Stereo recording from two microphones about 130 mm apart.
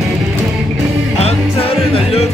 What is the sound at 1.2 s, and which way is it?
Music, 50° left (ahead or behind).